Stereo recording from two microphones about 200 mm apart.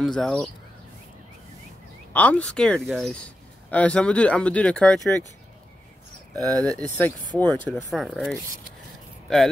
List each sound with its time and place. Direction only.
0.0 s speech: centre (ahead or behind)
2.1 s speech: 5° left (ahead or behind)
6.3 s speech: 20° right (ahead or behind)
6.9 s speech: 10° left (ahead or behind)